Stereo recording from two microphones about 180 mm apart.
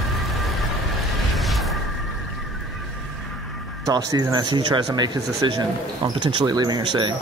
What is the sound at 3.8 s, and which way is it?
Speech, 20° right (ahead or behind).